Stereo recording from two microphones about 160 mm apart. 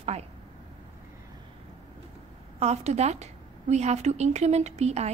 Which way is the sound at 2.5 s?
40° right (ahead or behind).